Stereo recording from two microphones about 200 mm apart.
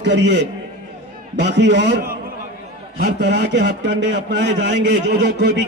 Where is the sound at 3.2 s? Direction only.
60° right (ahead or behind).